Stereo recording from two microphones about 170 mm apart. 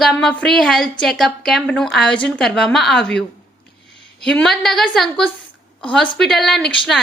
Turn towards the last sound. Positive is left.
turn(degrees=5)  # may be behind; listen again after turning